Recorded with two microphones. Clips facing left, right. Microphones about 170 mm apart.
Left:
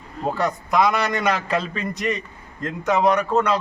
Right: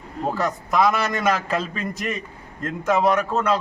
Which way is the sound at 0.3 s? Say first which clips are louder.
Left 1 dB; centre (ahead or behind).